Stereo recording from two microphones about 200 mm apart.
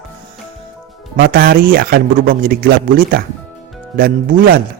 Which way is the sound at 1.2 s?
50° right (ahead or behind).